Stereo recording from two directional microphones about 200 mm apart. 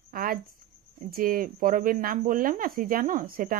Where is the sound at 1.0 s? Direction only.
45° right (ahead or behind).